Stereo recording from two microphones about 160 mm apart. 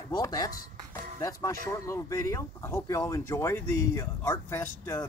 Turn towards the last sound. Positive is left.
turn(degrees=20)  # may be behind; listen again after turning